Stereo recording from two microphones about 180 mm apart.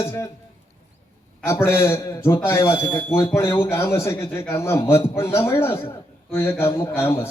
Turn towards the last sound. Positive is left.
turn(degrees=15)  # may be behind; listen again after turning